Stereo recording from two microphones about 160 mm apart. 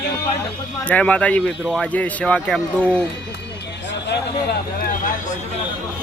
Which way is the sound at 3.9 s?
90° left.